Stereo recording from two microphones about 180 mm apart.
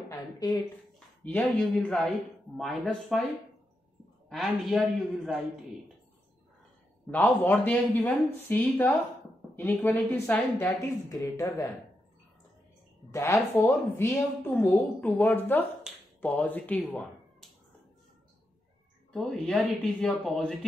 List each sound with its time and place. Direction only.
0.1 s a woman's voice: 20° left (ahead or behind)
0.9 s speech: 5° left (ahead or behind)
4.3 s speech: centre (ahead or behind)
7.1 s a woman's voice: 10° left (ahead or behind)
13.1 s a woman's voice: 15° left (ahead or behind)
15.9 s finger snapping: 5° right (ahead or behind)
16.2 s speech: 10° left (ahead or behind)
19.1 s speech: 5° left (ahead or behind)